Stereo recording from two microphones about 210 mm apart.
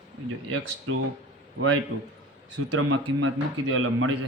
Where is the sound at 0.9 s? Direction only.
80° right.